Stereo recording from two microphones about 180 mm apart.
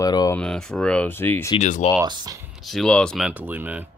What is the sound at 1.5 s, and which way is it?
Speech, 45° left (ahead or behind).